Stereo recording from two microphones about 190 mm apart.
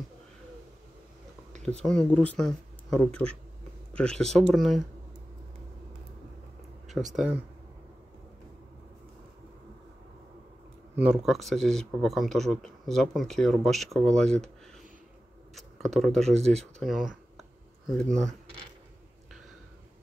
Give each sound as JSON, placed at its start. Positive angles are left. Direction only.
{"t": 1.6, "sound": "speech", "side_deg": 5}
{"t": 11.0, "sound": "speech", "side_deg": -5}
{"t": 15.5, "sound": "speech", "side_deg": 0}